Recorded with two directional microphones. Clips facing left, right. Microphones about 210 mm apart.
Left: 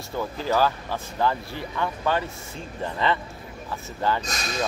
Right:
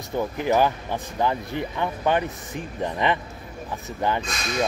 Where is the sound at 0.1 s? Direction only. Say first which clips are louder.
Right 3 dB; 20° right (ahead or behind).